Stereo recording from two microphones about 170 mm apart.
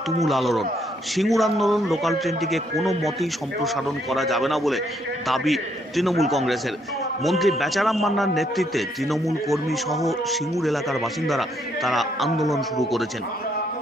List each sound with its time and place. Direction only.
0.2 s a man's voice: centre (ahead or behind)